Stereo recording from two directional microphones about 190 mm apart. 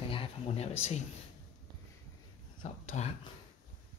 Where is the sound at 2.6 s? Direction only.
40° left (ahead or behind).